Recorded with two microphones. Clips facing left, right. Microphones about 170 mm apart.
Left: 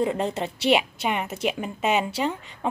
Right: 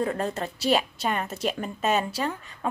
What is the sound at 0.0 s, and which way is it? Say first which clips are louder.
A woman's voice: left 3 dB; 20° left (ahead or behind).